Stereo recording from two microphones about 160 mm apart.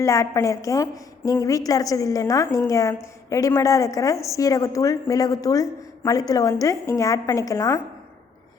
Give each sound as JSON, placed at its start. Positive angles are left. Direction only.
{"t": 0.0, "sound": "a woman's voice", "side_deg": 20}